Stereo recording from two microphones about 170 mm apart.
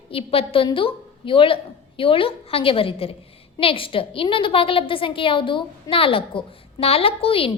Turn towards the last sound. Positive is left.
turn(degrees=35)  # may be behind; listen again after turning